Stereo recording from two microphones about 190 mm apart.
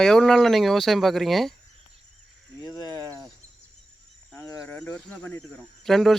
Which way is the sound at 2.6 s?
20° left (ahead or behind).